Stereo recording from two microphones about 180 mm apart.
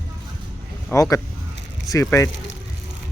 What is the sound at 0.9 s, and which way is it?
Speech, 15° left (ahead or behind).